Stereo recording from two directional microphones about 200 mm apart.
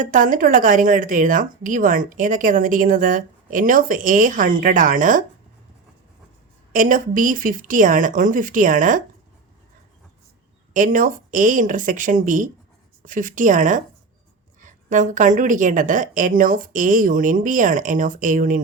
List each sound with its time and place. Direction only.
0.0 s speech: 40° right (ahead or behind)
6.7 s a woman's voice: 45° right (ahead or behind)
10.8 s a woman's voice: 40° right (ahead or behind)